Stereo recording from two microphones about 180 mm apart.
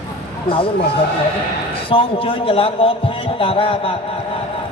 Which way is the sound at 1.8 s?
30° left (ahead or behind).